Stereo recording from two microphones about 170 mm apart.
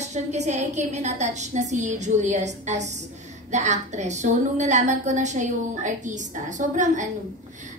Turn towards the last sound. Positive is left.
turn(degrees=-45)  # may be behind; listen again after turning